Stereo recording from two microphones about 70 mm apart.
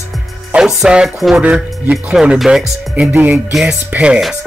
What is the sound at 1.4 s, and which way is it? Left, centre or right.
Speech, centre.